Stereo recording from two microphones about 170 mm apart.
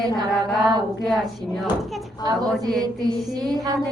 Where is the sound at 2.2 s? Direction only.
20° right (ahead or behind).